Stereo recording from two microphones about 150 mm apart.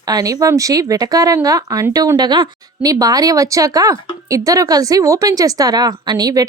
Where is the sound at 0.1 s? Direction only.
25° right (ahead or behind).